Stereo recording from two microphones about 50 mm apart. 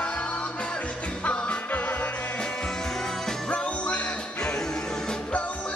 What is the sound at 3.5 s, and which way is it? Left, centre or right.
Music, left.